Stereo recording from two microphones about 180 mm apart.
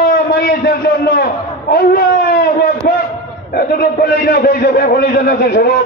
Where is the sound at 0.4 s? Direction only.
60° left (ahead or behind).